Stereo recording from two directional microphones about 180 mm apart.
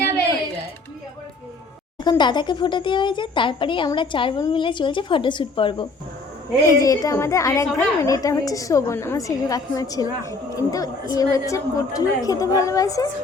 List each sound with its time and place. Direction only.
2.0 s a woman's voice: 25° left (ahead or behind)